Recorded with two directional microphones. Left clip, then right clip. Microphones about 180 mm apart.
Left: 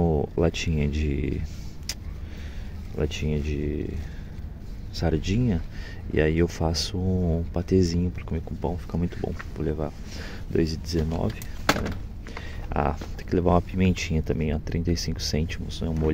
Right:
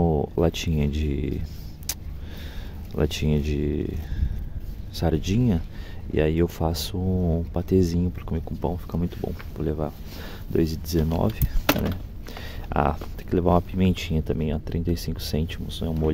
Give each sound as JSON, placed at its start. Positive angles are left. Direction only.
{"t": 0.0, "sound": "speech", "side_deg": -10}
{"t": 1.9, "sound": "vehicle", "side_deg": -15}
{"t": 3.0, "sound": "speech", "side_deg": -25}
{"t": 4.9, "sound": "speech", "side_deg": -10}
{"t": 11.1, "sound": "speech", "side_deg": -30}
{"t": 12.6, "sound": "speech", "side_deg": -15}